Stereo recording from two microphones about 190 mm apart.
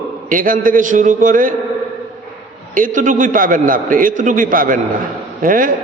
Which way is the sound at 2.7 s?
45° right (ahead or behind).